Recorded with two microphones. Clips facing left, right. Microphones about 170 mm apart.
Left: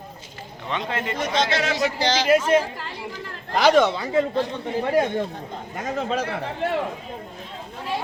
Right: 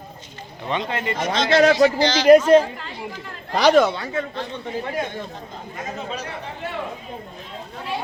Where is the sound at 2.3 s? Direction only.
45° right (ahead or behind).